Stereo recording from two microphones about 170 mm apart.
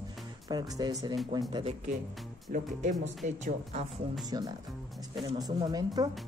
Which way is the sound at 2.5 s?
50° right (ahead or behind).